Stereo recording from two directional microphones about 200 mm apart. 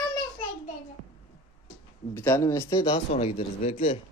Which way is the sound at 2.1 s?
10° left (ahead or behind).